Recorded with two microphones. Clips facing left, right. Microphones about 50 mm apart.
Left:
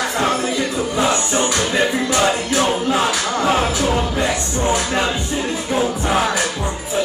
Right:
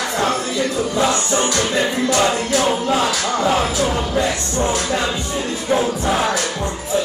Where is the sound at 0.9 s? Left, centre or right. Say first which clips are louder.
Left 1 dB; left.